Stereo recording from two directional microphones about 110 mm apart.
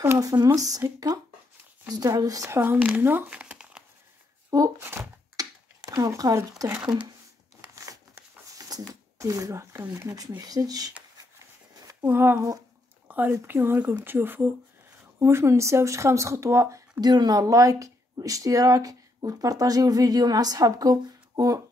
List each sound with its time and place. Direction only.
0.2 s speech: 30° right (ahead or behind)
3.0 s a sound: 20° right (ahead or behind)
4.5 s speech: 30° right (ahead or behind)
5.3 s a sound: 35° right (ahead or behind)
8.5 s speech: 35° right (ahead or behind)
10.0 s speech: 35° right (ahead or behind)
11.8 s a sound: 35° right (ahead or behind)
12.1 s speech: 20° right (ahead or behind)
17.0 s speech: 40° right (ahead or behind)